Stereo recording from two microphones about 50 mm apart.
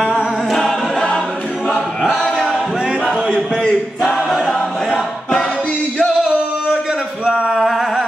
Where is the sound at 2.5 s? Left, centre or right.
Centre.